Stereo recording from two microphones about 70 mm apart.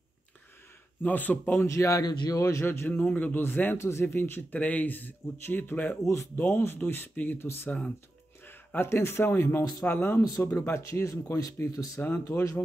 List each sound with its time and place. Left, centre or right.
1.0 s speech: left
1.6 s speech: left
2.0 s a man's voice: left
2.4 s speech: left
3.0 s speech: left
3.7 s speech: left
4.0 s speech: left
8.5 s speech: left
10.5 s speech: left
12.0 s speech: left